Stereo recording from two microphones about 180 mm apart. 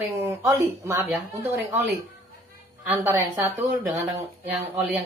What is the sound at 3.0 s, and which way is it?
Speech, 15° right (ahead or behind).